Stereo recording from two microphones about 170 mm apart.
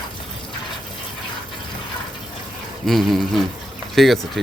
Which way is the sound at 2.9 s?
Centre (ahead or behind).